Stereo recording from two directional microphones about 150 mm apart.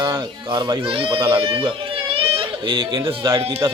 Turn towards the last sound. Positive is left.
turn(degrees=-30)  # may be behind; listen again after turning